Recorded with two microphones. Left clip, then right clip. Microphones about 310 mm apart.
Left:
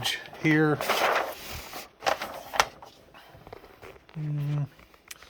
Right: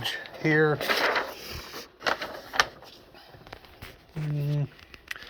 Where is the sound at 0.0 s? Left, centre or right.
Centre.